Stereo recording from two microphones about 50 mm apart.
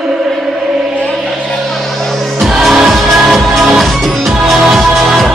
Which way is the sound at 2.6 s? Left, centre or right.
Centre.